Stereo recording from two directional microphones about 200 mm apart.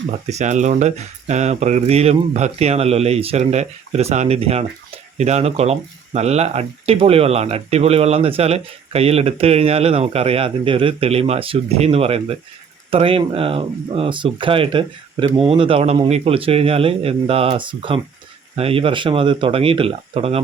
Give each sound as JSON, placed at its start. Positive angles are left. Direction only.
{"t": 0.3, "sound": "a man's voice", "side_deg": -35}